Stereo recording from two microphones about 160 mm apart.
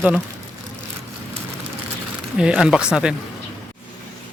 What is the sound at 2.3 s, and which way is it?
Speech, 5° right (ahead or behind).